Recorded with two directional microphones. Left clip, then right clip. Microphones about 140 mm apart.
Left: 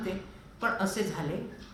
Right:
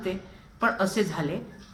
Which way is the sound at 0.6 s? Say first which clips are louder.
Right 5 dB; 35° left (ahead or behind).